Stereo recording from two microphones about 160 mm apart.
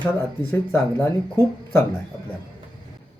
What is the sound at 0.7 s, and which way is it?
Speech, 20° left (ahead or behind).